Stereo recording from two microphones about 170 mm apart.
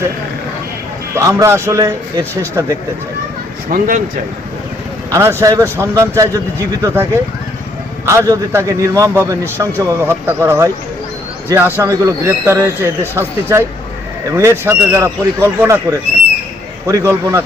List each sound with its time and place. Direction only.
1.1 s a man's voice: 20° right (ahead or behind)
3.7 s speech: 50° right (ahead or behind)
5.1 s a man's voice: 15° right (ahead or behind)